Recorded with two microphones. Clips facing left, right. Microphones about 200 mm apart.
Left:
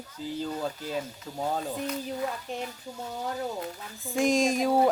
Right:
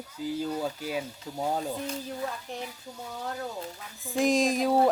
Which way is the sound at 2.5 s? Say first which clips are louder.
Left 3 dB; 15° left (ahead or behind).